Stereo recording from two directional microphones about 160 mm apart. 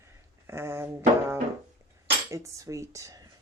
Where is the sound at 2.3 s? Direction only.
20° right (ahead or behind).